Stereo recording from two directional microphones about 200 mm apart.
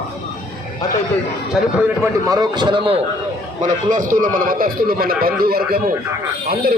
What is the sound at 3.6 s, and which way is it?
A man's voice, 40° right (ahead or behind).